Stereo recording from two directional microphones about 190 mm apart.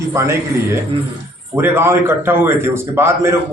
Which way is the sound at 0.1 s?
15° right (ahead or behind).